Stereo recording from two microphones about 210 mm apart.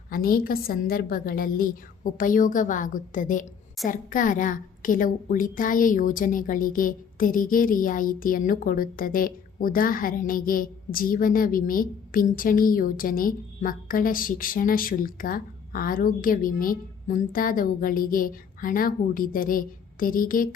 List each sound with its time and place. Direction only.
0.1 s a woman's voice: 45° left (ahead or behind)